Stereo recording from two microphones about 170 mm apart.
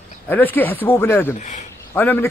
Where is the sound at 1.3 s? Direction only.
45° left (ahead or behind).